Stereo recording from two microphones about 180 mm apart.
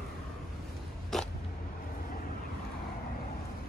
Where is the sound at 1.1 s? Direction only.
Centre (ahead or behind).